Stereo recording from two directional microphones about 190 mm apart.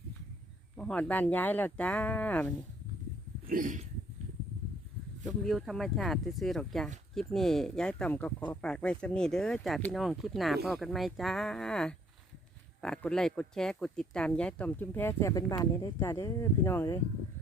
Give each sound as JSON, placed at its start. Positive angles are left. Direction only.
{"t": 0.8, "sound": "speech", "side_deg": 5}
{"t": 3.4, "sound": "a sound", "side_deg": -45}
{"t": 5.2, "sound": "speech", "side_deg": 0}